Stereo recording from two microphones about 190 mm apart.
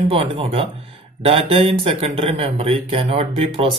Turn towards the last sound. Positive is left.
turn(degrees=-30)  # may be behind; listen again after turning